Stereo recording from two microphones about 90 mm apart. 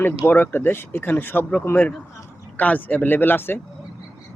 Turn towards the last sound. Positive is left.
turn(degrees=25)  # may be behind; listen again after turning